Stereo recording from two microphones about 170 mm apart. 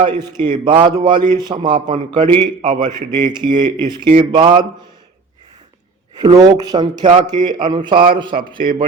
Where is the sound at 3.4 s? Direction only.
10° left (ahead or behind).